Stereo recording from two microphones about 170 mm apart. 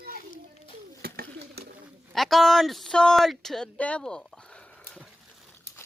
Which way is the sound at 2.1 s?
Centre (ahead or behind).